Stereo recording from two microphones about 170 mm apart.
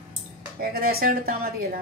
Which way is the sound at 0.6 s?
60° right (ahead or behind).